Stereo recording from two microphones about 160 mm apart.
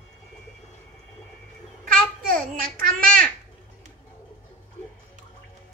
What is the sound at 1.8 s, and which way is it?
Babbling, 60° right (ahead or behind).